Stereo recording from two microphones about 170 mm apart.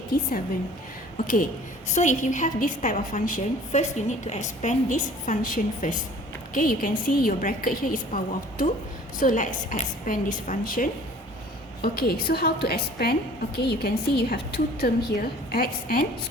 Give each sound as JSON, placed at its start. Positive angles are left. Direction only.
{"t": 0.1, "sound": "a woman's voice", "side_deg": 55}
{"t": 1.9, "sound": "a woman's voice", "side_deg": 45}